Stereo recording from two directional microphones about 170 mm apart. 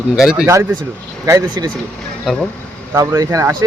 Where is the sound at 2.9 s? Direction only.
20° right (ahead or behind).